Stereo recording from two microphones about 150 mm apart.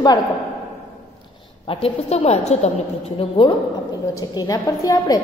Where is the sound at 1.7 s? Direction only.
40° left (ahead or behind).